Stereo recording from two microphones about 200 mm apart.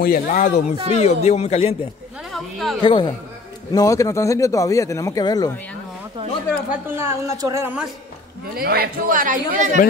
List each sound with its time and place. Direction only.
0.0 s a man's voice: 45° left (ahead or behind)
2.3 s a woman's voice: centre (ahead or behind)
2.8 s a man's voice: 25° left (ahead or behind)
6.7 s a woman's voice: 10° right (ahead or behind)
8.5 s speech: 50° right (ahead or behind)